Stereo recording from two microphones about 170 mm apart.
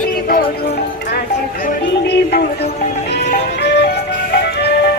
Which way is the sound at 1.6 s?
70° left (ahead or behind).